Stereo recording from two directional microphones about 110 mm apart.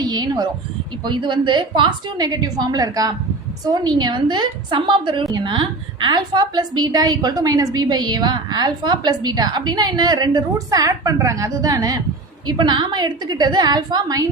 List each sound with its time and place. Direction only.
0.0 s a sound: 40° right (ahead or behind)
1.0 s a woman's voice: 45° right (ahead or behind)
12.5 s a woman's voice: 45° right (ahead or behind)